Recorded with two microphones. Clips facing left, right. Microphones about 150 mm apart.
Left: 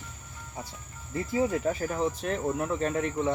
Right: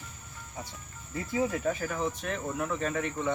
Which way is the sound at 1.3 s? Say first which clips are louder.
Left 2 dB; 30° left (ahead or behind).